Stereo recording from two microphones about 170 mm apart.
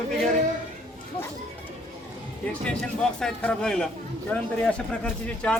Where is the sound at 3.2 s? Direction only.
5° left (ahead or behind).